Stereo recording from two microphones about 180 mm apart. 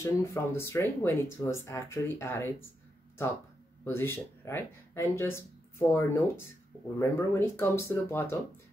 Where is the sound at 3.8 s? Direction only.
15° left (ahead or behind).